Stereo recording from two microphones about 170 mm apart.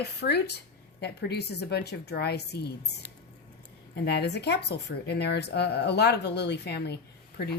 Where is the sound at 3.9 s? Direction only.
75° left (ahead or behind).